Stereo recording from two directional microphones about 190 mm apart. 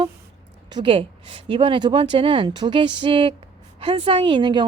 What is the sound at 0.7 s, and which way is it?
Speech, 25° right (ahead or behind).